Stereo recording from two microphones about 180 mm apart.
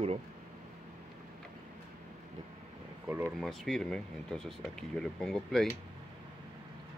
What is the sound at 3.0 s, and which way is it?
Speech, 15° right (ahead or behind).